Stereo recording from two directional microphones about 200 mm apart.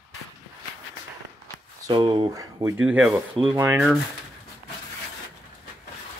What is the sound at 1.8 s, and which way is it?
Speech, 25° right (ahead or behind).